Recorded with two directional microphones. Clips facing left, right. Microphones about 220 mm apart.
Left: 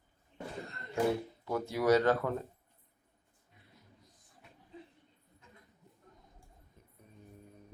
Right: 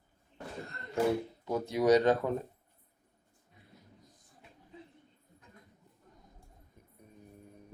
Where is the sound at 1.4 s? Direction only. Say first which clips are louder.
Right 2 dB; 20° right (ahead or behind).